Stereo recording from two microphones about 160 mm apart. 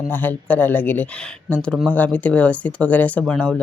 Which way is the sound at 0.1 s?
10° left (ahead or behind).